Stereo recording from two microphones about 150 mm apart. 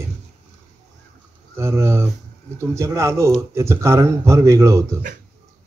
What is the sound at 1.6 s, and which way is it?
Speech, 20° right (ahead or behind).